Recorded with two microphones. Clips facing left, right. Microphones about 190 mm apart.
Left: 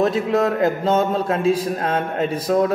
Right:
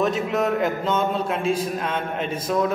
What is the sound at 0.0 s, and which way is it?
A man's voice, 35° left (ahead or behind).